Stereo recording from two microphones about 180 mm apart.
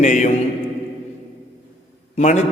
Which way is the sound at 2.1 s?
40° left (ahead or behind).